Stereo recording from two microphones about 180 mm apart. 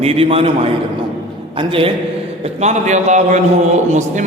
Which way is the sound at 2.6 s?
40° right (ahead or behind).